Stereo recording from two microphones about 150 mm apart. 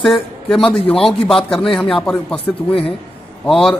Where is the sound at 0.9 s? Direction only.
35° left (ahead or behind).